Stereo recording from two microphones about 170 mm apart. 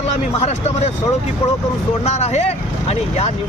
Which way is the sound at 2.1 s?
40° left (ahead or behind).